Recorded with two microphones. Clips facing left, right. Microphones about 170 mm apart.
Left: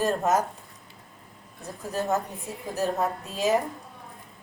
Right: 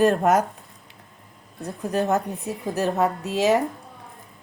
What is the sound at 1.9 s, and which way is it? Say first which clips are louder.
Speech: right 5 dB; 65° right (ahead or behind).